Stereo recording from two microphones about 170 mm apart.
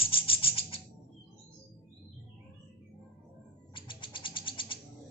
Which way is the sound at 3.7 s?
30° left (ahead or behind).